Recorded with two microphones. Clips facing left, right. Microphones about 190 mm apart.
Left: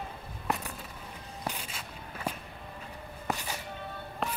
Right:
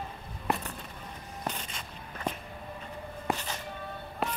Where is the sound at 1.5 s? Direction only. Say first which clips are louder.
Right 1 dB; 10° left (ahead or behind).